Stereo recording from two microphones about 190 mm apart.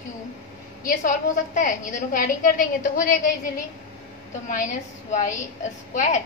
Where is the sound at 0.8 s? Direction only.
45° left (ahead or behind).